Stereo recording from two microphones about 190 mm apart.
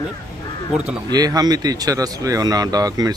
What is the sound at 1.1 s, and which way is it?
Speech, 20° right (ahead or behind).